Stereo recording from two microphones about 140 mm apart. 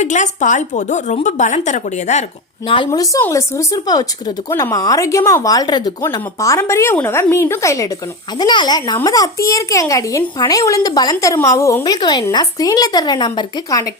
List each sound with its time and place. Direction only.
0.0 s a woman's voice: 60° left (ahead or behind)
2.6 s speech: 35° left (ahead or behind); by 11.8 s 20° left (ahead or behind)
11.8 s speech: 30° left (ahead or behind)